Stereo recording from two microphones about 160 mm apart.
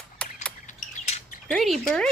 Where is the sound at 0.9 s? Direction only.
45° left (ahead or behind).